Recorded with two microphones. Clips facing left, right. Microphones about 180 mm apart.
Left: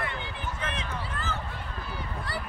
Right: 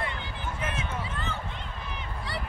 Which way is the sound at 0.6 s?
5° right (ahead or behind).